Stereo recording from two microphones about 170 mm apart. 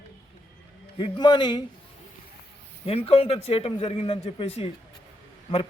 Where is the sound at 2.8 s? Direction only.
35° left (ahead or behind).